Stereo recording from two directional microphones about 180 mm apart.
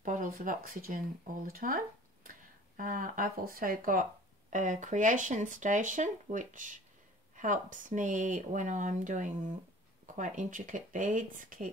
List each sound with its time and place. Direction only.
0.0 s speech: 45° right (ahead or behind)
2.8 s speech: 50° right (ahead or behind)